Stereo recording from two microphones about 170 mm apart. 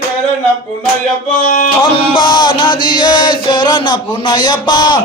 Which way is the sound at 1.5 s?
50° left (ahead or behind).